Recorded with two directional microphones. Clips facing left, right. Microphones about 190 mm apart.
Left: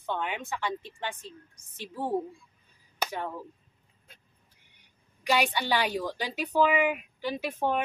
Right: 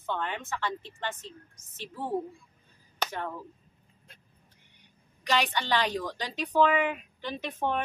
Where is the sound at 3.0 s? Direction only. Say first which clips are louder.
Left 1 dB; 10° left (ahead or behind).